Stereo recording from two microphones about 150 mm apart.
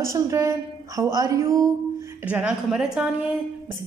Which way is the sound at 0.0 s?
20° right (ahead or behind).